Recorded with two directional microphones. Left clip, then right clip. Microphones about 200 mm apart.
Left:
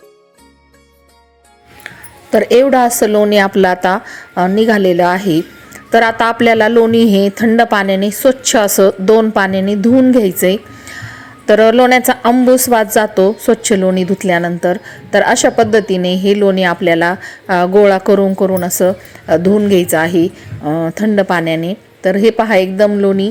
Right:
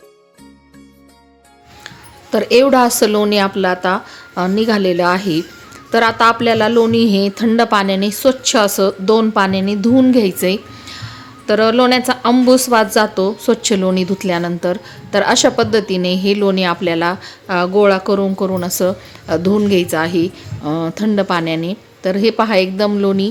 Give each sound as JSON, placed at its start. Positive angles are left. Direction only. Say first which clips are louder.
{"t": 2.3, "sound": "a woman's voice", "louder": "left 2 dB", "side_deg": 15}
{"t": 3.4, "sound": "a woman's voice", "louder": "left 4 dB", "side_deg": 25}